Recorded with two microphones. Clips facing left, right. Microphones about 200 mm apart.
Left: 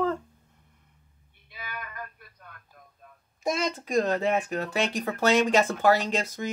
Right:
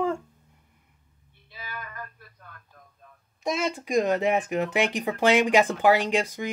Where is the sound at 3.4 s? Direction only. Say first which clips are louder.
Right 1 dB; 5° right (ahead or behind).